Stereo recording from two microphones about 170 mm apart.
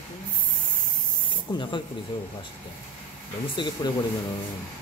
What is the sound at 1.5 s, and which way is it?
Speech, 25° left (ahead or behind).